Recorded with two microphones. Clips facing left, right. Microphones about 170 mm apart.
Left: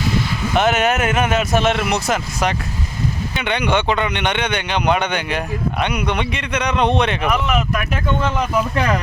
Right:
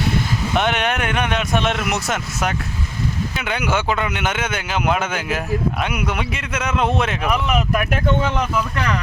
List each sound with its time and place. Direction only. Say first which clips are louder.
0.5 s speech: left 4 dB; centre (ahead or behind)
8.7 s speech: left 4 dB; 35° left (ahead or behind)